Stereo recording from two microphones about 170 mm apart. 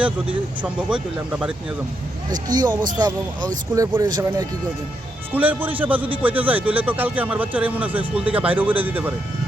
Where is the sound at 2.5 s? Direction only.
25° right (ahead or behind).